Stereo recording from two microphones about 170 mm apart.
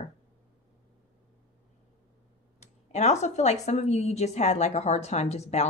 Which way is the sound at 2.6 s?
40° left (ahead or behind).